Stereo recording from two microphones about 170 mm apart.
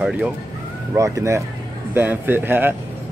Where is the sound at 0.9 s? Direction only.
20° right (ahead or behind).